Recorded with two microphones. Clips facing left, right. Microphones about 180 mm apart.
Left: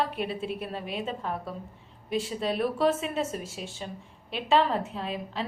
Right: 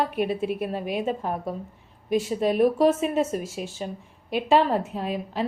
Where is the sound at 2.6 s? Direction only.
45° right (ahead or behind).